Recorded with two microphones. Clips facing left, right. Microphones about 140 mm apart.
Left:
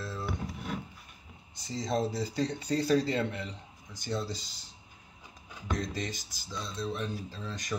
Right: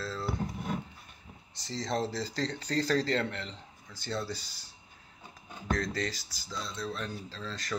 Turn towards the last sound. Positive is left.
turn(degrees=15)  # may be behind; listen again after turning